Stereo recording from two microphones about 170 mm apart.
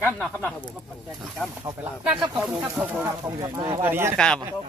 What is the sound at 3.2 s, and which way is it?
Speech, 20° right (ahead or behind).